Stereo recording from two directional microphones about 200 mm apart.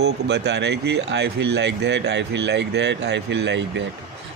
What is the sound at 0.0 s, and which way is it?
Speech, 60° right (ahead or behind).